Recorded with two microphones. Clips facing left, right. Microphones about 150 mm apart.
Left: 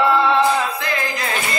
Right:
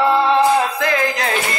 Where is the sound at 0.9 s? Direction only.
90° right.